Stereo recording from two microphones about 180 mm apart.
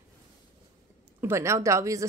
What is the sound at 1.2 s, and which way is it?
Speech, 15° right (ahead or behind).